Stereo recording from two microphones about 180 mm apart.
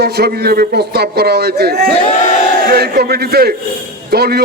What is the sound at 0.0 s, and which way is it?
A man's voice, 60° right (ahead or behind).